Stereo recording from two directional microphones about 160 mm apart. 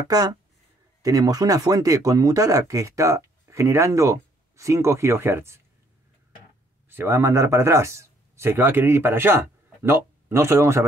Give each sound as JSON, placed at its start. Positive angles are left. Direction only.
{"t": 0.1, "sound": "speech", "side_deg": -25}
{"t": 6.9, "sound": "speech", "side_deg": -15}